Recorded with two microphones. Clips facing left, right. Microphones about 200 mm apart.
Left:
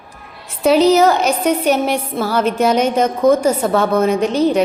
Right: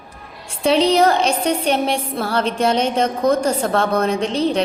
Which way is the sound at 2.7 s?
10° left (ahead or behind).